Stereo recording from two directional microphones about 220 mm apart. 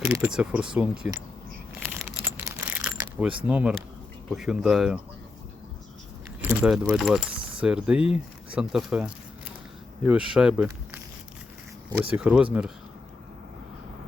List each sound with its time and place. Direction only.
0.0 s speech: 5° right (ahead or behind)
1.8 s a sound: 5° right (ahead or behind)
3.0 s speech: 5° right (ahead or behind)
6.4 s speech: 5° right (ahead or behind)